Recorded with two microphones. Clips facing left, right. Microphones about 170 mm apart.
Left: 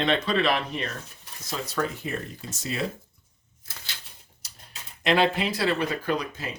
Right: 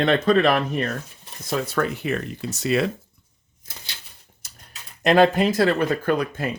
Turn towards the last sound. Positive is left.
turn(degrees=-55)  # may be behind; listen again after turning